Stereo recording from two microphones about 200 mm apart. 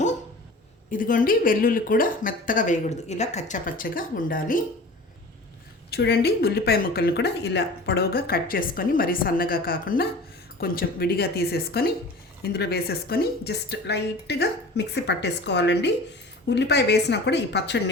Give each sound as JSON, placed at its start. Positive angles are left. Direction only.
{"t": 0.9, "sound": "a woman's voice", "side_deg": 40}
{"t": 5.9, "sound": "a woman's voice", "side_deg": 55}